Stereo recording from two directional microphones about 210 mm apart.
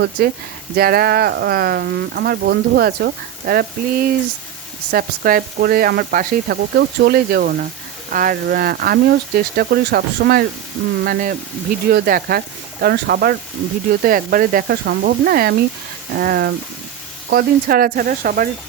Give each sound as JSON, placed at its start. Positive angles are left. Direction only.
{"t": 0.2, "sound": "speech", "side_deg": -50}